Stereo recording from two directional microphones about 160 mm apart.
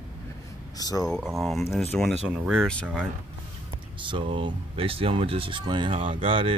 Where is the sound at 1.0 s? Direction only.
Centre (ahead or behind).